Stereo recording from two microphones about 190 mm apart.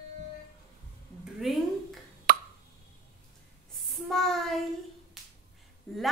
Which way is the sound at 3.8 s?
Centre (ahead or behind).